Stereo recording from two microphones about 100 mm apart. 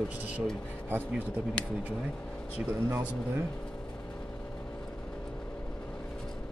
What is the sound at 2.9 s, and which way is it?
Speech, 25° right (ahead or behind).